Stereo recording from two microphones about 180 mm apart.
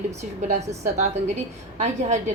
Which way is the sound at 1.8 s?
40° right (ahead or behind).